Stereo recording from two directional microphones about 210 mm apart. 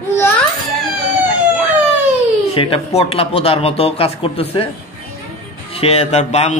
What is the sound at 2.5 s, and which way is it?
Speech, 25° left (ahead or behind).